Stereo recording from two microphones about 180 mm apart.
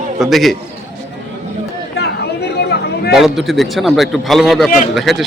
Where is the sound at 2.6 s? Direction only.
65° left (ahead or behind).